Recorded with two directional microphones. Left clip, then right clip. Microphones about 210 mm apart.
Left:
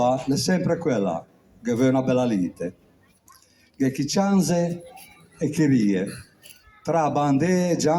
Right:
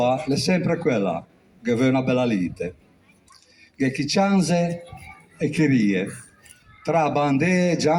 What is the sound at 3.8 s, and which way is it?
Speech, 35° right (ahead or behind).